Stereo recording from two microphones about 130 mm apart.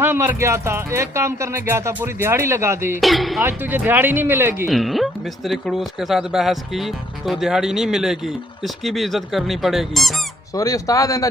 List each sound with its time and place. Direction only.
0.0 s speech: 20° right (ahead or behind)
3.0 s speech: centre (ahead or behind)
3.4 s speech: 15° right (ahead or behind)
4.6 s speech: centre (ahead or behind)
10.5 s speech: 25° left (ahead or behind)